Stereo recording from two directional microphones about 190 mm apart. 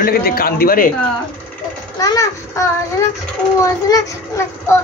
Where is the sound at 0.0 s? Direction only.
50° left (ahead or behind).